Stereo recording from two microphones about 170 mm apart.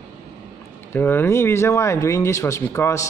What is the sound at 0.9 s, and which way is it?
Speech, 10° left (ahead or behind).